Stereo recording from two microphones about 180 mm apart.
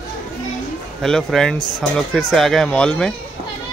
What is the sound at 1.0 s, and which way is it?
Speech, centre (ahead or behind).